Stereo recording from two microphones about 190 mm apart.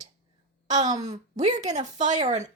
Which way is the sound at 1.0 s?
35° right (ahead or behind).